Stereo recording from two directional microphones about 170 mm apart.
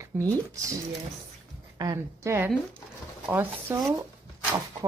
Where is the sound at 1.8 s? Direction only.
20° right (ahead or behind).